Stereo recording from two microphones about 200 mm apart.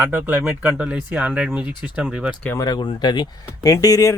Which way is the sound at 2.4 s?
15° left (ahead or behind).